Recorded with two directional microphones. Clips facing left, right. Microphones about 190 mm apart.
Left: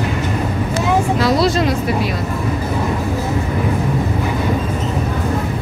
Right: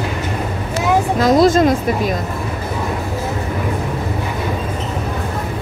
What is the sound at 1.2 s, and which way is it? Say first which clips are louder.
Speech: right 4 dB; 45° right (ahead or behind).